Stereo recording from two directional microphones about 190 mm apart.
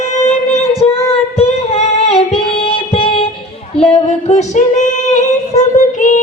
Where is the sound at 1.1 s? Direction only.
30° left (ahead or behind).